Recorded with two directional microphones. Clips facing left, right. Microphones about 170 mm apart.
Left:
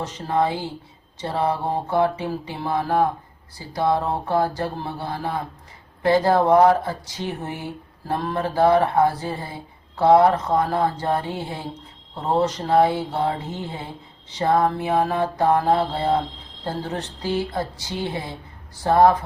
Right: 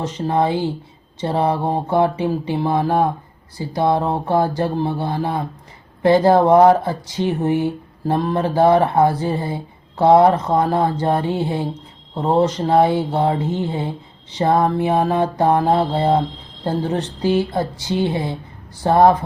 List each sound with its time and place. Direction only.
0.0 s mantra: 25° right (ahead or behind)